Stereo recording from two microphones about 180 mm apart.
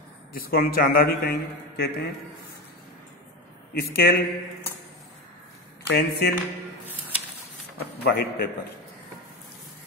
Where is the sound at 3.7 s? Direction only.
55° left (ahead or behind).